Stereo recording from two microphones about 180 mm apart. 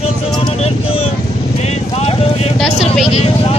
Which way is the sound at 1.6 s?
35° left (ahead or behind).